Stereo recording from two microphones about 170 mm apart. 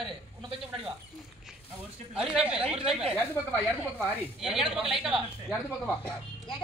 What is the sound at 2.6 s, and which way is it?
Speech, 35° right (ahead or behind).